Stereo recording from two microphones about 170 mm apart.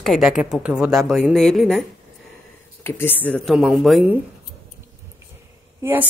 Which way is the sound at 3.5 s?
Centre (ahead or behind).